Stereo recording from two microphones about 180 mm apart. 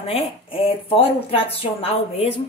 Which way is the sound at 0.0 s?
30° left (ahead or behind).